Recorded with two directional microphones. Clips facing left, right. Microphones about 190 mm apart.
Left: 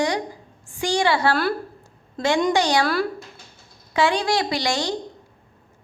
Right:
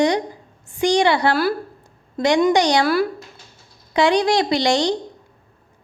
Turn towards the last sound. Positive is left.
turn(degrees=-20)  # may be behind; listen again after turning